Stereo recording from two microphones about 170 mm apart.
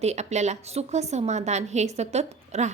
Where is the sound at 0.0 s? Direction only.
40° right (ahead or behind).